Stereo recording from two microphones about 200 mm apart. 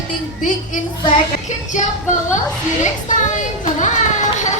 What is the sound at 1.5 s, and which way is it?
A woman's voice, 35° left (ahead or behind).